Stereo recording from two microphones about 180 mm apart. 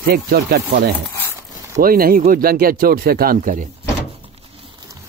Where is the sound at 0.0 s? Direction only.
55° right (ahead or behind).